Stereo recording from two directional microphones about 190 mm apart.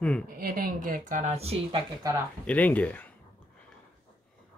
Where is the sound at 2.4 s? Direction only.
10° left (ahead or behind).